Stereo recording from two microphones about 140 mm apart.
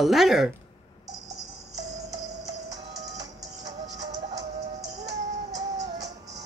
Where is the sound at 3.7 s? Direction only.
25° right (ahead or behind).